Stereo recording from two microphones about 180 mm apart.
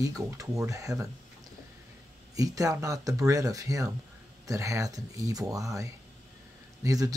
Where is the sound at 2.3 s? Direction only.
20° right (ahead or behind).